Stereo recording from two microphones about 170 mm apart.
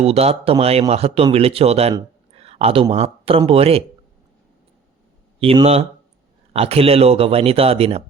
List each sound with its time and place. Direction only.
0.0 s speech: 35° right (ahead or behind)
2.0 s a sound: 35° right (ahead or behind)
2.9 s speech: 35° right (ahead or behind)
5.4 s speech: 35° right (ahead or behind)